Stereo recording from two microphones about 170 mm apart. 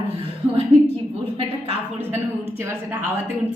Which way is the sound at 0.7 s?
35° right (ahead or behind).